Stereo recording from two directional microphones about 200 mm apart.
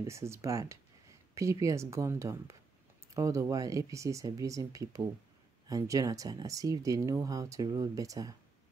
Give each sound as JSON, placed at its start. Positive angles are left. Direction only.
{"t": 0.0, "sound": "speech", "side_deg": -15}